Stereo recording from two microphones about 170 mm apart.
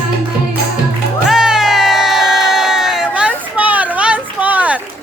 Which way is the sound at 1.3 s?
5° right (ahead or behind).